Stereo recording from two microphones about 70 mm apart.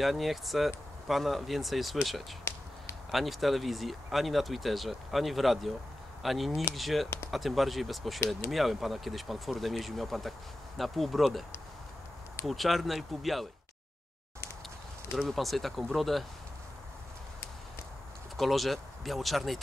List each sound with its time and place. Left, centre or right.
0.0 s speech: centre
2.5 s a sound: left
3.1 s speech: centre
12.4 s speech: centre
15.1 s speech: centre
18.3 s speech: centre